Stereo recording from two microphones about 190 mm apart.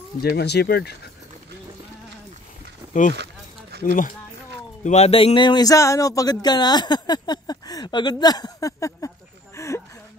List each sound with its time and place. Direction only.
0.2 s speech: 55° left (ahead or behind)
2.9 s speech: 40° left (ahead or behind)
4.8 s a sound: 35° left (ahead or behind); by 9.7 s 15° left (ahead or behind)